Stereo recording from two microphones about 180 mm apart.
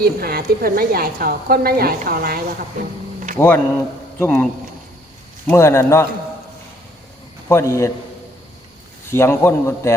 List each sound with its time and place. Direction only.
0.0 s a woman's voice: 55° right (ahead or behind)
3.3 s a man's voice: 10° left (ahead or behind)
5.5 s a man's voice: 15° left (ahead or behind)
7.4 s a man's voice: 15° left (ahead or behind)
9.0 s a man's voice: 15° left (ahead or behind)